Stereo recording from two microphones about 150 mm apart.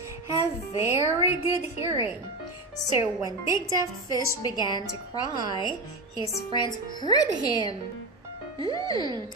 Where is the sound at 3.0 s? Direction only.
20° right (ahead or behind).